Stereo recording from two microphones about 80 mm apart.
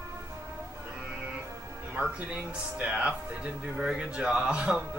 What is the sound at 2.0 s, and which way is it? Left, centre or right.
Speech, centre.